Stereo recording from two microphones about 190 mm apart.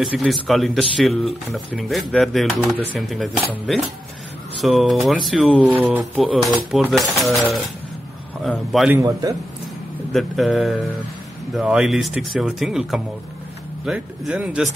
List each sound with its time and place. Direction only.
0.0 s speech: centre (ahead or behind)
8.9 s a man's voice: 15° right (ahead or behind)
10.1 s speech: centre (ahead or behind)